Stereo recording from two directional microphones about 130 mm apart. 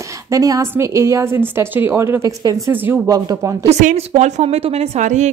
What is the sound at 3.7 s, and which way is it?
A woman's voice, 65° right (ahead or behind).